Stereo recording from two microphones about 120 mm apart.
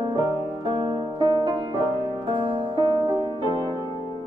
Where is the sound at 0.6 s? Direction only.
45° right (ahead or behind).